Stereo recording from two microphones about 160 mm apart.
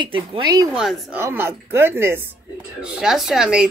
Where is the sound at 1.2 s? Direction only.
15° right (ahead or behind).